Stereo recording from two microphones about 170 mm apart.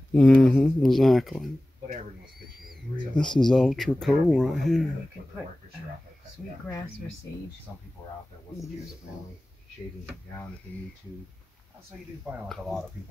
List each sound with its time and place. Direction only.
0.1 s speech: 5° left (ahead or behind)
3.2 s speech: 5° left (ahead or behind)
12.4 s speech: centre (ahead or behind)